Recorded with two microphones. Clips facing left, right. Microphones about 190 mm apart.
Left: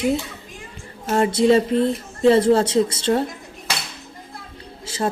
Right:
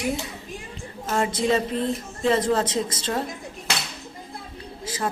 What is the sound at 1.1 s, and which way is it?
Speech, 30° left (ahead or behind).